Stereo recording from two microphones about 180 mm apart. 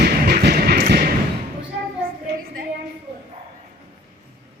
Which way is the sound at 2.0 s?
55° right (ahead or behind).